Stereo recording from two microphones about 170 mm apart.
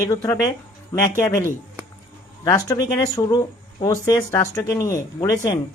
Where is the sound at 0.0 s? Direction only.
20° left (ahead or behind).